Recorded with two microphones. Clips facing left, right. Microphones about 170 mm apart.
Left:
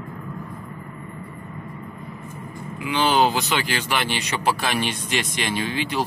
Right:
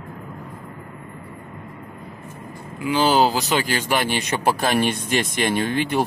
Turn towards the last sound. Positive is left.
turn(degrees=-55)  # may be behind; listen again after turning